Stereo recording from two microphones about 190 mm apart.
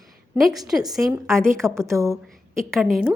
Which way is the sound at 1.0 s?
15° right (ahead or behind).